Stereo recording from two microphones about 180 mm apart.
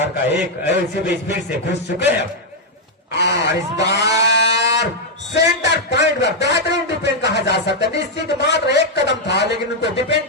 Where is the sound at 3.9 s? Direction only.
75° left (ahead or behind).